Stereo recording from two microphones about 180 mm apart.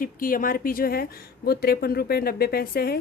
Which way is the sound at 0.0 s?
50° left (ahead or behind).